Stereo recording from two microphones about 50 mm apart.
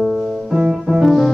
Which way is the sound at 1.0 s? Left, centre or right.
Centre.